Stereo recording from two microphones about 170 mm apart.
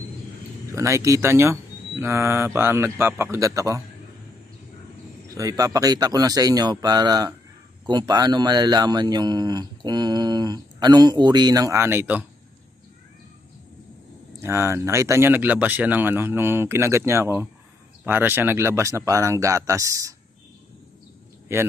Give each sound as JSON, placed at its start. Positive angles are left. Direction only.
{"t": 0.7, "sound": "speech", "side_deg": -15}
{"t": 5.3, "sound": "speech", "side_deg": -20}
{"t": 14.4, "sound": "speech", "side_deg": -15}
{"t": 21.5, "sound": "speech", "side_deg": -15}